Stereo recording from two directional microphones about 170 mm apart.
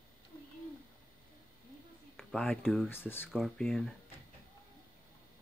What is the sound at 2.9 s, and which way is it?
Speech, 10° left (ahead or behind).